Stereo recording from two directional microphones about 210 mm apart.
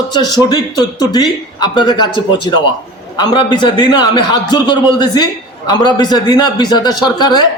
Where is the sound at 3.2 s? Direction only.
20° left (ahead or behind).